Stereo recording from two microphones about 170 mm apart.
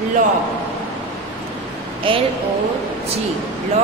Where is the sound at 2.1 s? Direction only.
30° right (ahead or behind).